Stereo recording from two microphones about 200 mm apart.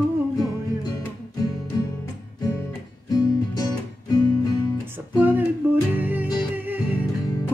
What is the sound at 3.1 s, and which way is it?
Music, 20° left (ahead or behind).